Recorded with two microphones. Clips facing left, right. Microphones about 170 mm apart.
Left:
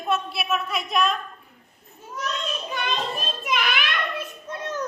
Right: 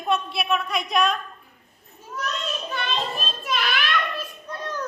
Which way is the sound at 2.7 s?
15° left (ahead or behind).